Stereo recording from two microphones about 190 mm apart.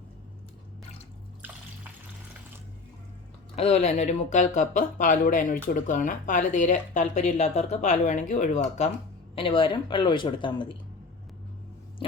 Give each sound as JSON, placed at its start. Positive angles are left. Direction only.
{"t": 3.5, "sound": "speech", "side_deg": 35}
{"t": 9.3, "sound": "a woman's voice", "side_deg": 30}